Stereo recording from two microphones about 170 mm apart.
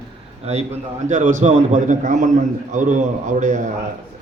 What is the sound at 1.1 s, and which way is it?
A man's voice, 45° right (ahead or behind).